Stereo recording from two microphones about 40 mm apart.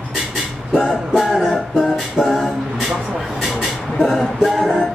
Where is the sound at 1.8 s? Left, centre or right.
Centre.